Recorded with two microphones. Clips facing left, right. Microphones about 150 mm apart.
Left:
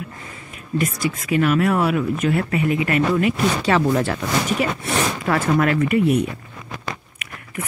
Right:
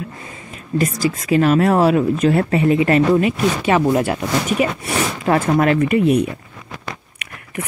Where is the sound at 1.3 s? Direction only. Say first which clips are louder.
Right 4 dB; 30° right (ahead or behind).